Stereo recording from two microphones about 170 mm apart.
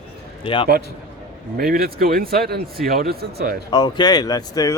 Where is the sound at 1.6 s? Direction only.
60° right (ahead or behind).